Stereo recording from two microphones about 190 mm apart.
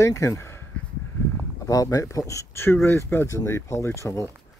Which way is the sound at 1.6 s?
20° left (ahead or behind).